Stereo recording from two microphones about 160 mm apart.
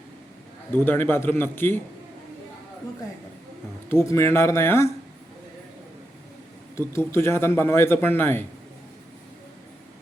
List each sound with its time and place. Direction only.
0.9 s a man's voice: 10° left (ahead or behind)
3.8 s a man's voice: 15° left (ahead or behind)
6.7 s a man's voice: 15° left (ahead or behind)